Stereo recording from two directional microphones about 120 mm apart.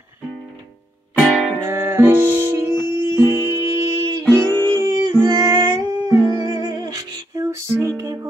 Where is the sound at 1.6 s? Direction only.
20° right (ahead or behind).